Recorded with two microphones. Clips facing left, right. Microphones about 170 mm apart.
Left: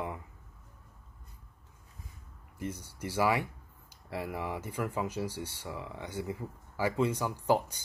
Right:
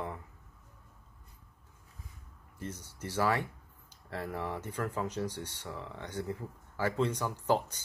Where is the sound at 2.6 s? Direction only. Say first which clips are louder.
Left 3 dB; 10° left (ahead or behind).